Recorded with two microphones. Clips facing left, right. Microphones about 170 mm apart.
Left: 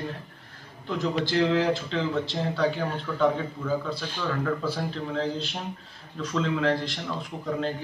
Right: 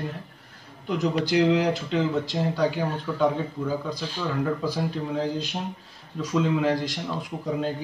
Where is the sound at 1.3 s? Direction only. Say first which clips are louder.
Right 2 dB; 15° right (ahead or behind).